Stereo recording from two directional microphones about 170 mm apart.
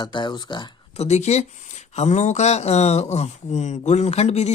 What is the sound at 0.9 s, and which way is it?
Speech, 40° left (ahead or behind).